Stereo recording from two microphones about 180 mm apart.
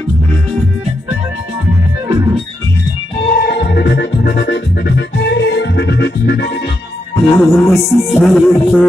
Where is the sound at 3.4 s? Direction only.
65° left (ahead or behind).